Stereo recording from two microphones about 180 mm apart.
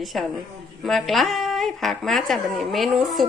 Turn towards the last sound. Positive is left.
turn(degrees=0)  # may be behind; listen again after turning